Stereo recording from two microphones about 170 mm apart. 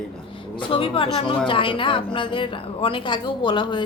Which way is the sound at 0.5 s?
30° left (ahead or behind).